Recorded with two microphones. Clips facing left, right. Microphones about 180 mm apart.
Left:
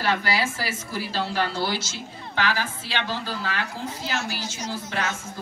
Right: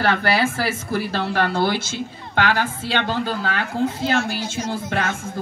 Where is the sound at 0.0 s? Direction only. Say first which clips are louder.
Right 5 dB; 60° right (ahead or behind).